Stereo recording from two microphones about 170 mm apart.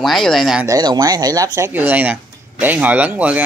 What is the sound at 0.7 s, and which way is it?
Speech, 20° right (ahead or behind).